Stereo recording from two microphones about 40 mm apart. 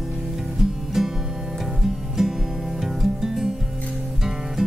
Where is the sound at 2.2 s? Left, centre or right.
Centre.